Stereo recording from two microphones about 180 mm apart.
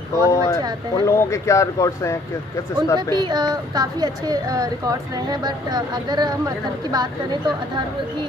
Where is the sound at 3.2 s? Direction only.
25° right (ahead or behind).